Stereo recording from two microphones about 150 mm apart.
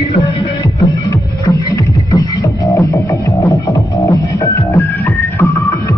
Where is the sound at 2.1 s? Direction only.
20° left (ahead or behind).